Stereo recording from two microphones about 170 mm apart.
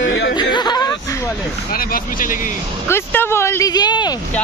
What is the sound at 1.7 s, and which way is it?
Speech, 55° left (ahead or behind).